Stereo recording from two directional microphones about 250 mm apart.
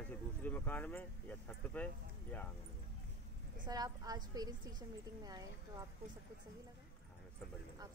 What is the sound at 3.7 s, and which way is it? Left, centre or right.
Speech, centre.